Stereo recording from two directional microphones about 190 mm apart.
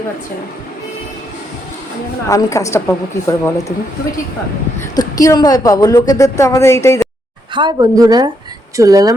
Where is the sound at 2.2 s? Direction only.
15° left (ahead or behind).